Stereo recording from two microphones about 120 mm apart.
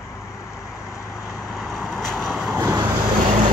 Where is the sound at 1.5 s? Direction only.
Centre (ahead or behind).